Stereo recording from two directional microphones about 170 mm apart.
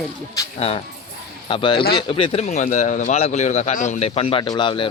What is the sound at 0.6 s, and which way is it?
A man's voice, 35° left (ahead or behind).